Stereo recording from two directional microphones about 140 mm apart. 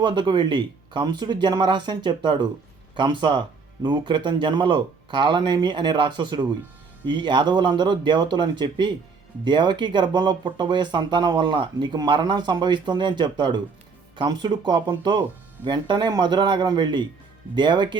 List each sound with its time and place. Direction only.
0.0 s speech: 35° right (ahead or behind)